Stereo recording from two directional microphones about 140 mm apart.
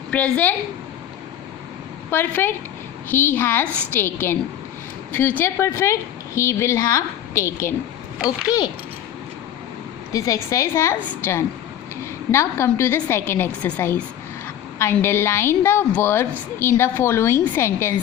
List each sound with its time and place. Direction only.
0.1 s a woman's voice: 10° left (ahead or behind)
2.0 s a woman's voice: 15° left (ahead or behind)
10.1 s a woman's voice: 25° left (ahead or behind)